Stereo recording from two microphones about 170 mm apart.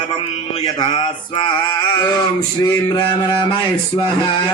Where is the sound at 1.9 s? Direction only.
20° left (ahead or behind).